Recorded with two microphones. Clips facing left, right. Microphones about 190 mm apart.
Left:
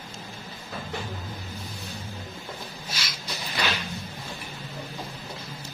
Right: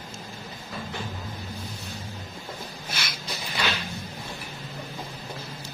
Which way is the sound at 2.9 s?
55° right (ahead or behind).